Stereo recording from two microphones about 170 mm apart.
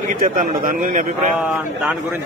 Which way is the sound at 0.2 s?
55° right (ahead or behind).